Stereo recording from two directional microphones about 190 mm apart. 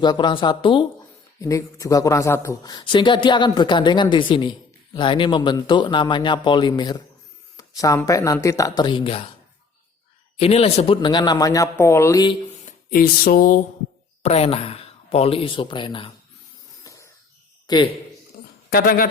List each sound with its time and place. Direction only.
0.0 s speech: 25° left (ahead or behind)
10.3 s speech: 30° left (ahead or behind)
12.9 s music: 50° left (ahead or behind)
14.2 s speech: 35° left (ahead or behind)
16.8 s music: 15° left (ahead or behind)
17.7 s speech: 20° left (ahead or behind)
18.7 s music: 50° left (ahead or behind)